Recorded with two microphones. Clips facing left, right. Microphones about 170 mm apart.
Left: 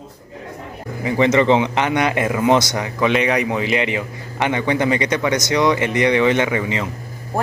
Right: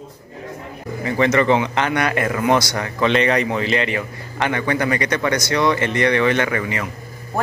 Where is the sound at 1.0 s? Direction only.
20° left (ahead or behind).